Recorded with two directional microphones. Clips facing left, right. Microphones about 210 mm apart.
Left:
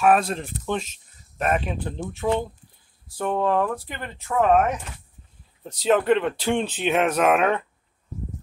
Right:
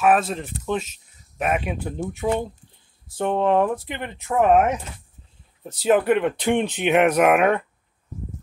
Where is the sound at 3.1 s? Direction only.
25° right (ahead or behind).